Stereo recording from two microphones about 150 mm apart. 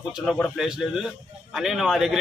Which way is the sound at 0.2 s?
5° left (ahead or behind).